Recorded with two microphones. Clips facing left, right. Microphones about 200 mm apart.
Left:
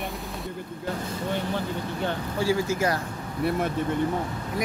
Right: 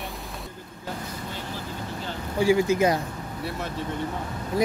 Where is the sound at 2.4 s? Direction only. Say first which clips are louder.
Right 5 dB; 15° right (ahead or behind).